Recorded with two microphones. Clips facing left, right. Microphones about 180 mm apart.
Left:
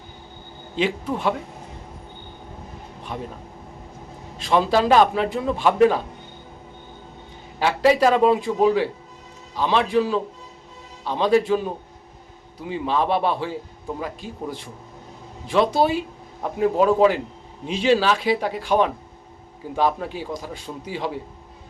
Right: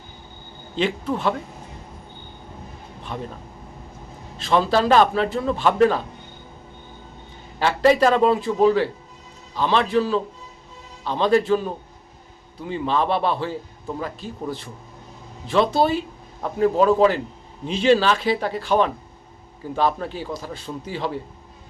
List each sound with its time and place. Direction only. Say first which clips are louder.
0.8 s a man's voice: even; 10° left (ahead or behind)
3.1 s a man's voice: even; 10° left (ahead or behind)
4.4 s a man's voice: even; 15° left (ahead or behind)
7.6 s a man's voice: right 1 dB; 10° left (ahead or behind)